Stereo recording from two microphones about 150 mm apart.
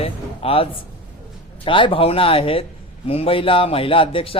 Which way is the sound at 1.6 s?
35° left (ahead or behind).